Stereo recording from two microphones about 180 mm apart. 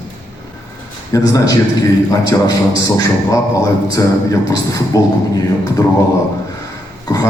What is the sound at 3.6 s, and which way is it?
A man's voice, 20° left (ahead or behind).